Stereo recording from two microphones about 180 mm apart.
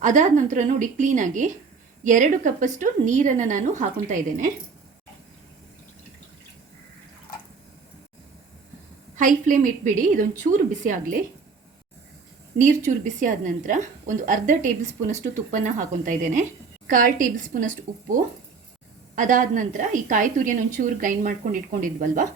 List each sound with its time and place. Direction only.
0.0 s a woman's voice: 45° right (ahead or behind)
9.1 s a woman's voice: 45° right (ahead or behind)
12.5 s a woman's voice: 45° right (ahead or behind)
19.1 s a woman's voice: 45° right (ahead or behind)